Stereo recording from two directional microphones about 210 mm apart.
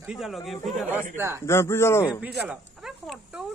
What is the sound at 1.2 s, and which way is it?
Speech, 15° right (ahead or behind).